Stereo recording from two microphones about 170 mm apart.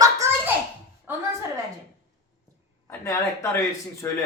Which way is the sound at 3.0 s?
15° left (ahead or behind).